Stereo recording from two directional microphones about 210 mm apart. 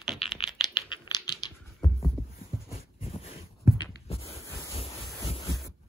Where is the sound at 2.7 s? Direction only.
25° left (ahead or behind).